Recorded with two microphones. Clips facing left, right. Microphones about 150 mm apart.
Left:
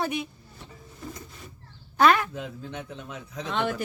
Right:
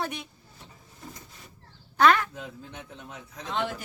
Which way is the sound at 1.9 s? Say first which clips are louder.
Left 1 dB; 10° left (ahead or behind).